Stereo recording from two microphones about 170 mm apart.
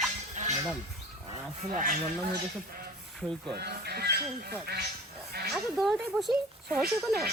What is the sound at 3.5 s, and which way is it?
Speech, 70° right (ahead or behind).